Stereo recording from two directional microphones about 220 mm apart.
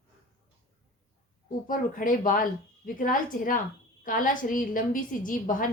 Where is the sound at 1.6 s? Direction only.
40° left (ahead or behind).